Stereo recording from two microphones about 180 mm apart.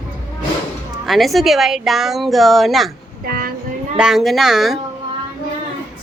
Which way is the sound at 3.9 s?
5° right (ahead or behind).